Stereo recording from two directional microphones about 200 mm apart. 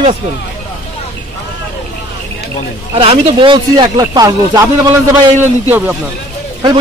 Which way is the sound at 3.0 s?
25° right (ahead or behind).